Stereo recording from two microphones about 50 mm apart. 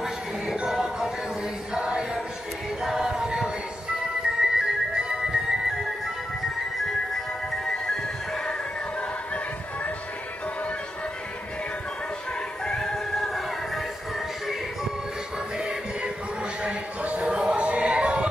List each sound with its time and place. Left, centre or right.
0.7 s music: centre
2.8 s a capella: centre
4.4 s music: centre
12.6 s music: centre
16.6 s music: right